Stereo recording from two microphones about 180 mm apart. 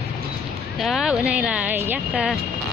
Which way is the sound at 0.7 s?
Centre (ahead or behind).